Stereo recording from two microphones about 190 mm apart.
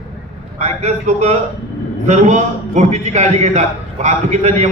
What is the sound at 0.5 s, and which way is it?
A man's voice, 35° right (ahead or behind).